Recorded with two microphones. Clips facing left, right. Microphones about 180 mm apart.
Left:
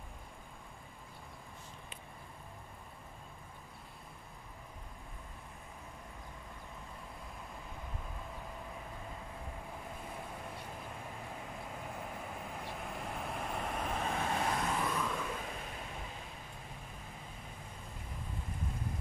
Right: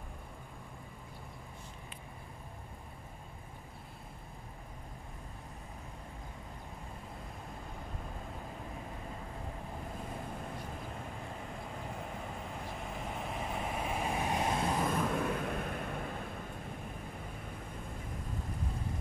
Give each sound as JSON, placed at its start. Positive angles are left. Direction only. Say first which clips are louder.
{"t": 12.4, "sound": "vehicle", "louder": "right 1 dB", "side_deg": 0}
{"t": 14.8, "sound": "vehicle", "louder": "right 4 dB", "side_deg": -50}